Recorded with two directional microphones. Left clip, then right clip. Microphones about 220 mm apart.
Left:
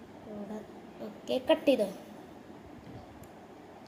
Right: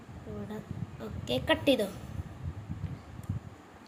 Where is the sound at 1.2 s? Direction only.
40° right (ahead or behind).